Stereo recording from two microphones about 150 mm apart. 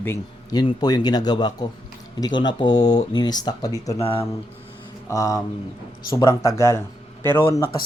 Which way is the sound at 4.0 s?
40° left (ahead or behind).